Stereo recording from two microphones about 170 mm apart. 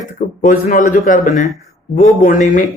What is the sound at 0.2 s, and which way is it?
A man's voice, 55° left (ahead or behind).